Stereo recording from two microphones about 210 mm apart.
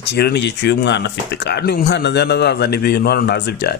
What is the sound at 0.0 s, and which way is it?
Speech, 50° left (ahead or behind).